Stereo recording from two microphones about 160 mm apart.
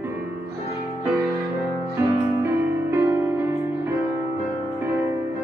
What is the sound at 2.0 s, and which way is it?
Music, 15° right (ahead or behind).